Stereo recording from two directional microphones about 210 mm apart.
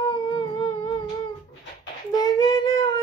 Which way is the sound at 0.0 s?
20° left (ahead or behind).